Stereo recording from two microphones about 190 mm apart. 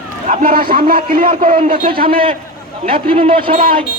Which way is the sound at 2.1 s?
30° right (ahead or behind).